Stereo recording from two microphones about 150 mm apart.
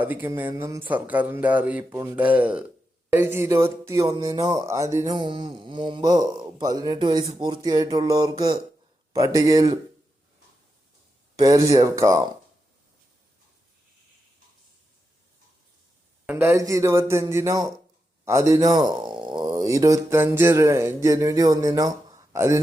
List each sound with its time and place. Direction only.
0.0 s speech: 10° right (ahead or behind)
4.0 s speech: 30° right (ahead or behind)
5.1 s speech: 30° right (ahead or behind)
11.3 s speech: 20° right (ahead or behind)
16.2 s speech: 15° right (ahead or behind)